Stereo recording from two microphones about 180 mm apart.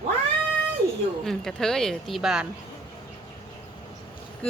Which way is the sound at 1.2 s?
5° left (ahead or behind).